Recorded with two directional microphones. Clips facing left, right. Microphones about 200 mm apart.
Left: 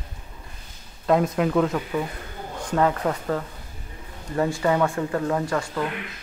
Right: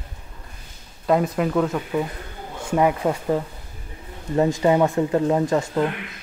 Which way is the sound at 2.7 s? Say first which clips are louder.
Right 3 dB; 15° right (ahead or behind).